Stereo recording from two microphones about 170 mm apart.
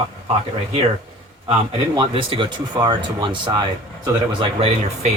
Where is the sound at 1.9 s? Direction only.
30° right (ahead or behind).